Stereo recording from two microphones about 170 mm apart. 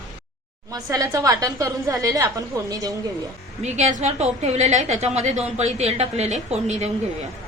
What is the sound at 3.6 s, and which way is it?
A woman's voice, 40° right (ahead or behind).